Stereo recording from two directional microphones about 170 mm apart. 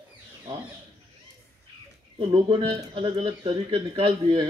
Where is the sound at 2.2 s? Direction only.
30° right (ahead or behind).